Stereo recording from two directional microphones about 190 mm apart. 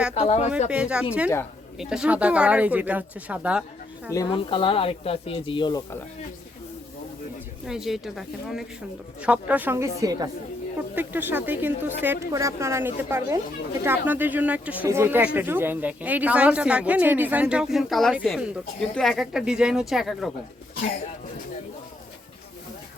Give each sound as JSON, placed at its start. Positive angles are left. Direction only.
{"t": 0.1, "sound": "speech", "side_deg": 35}
{"t": 0.7, "sound": "speech", "side_deg": -5}
{"t": 4.1, "sound": "speech", "side_deg": 20}
{"t": 7.7, "sound": "a woman's voice", "side_deg": 0}